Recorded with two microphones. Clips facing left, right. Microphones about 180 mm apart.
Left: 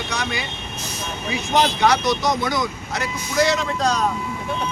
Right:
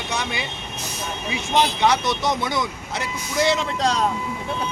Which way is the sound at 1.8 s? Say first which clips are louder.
Left 2 dB; 25° right (ahead or behind).